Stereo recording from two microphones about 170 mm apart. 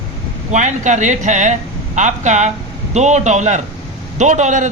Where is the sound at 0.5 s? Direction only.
45° right (ahead or behind).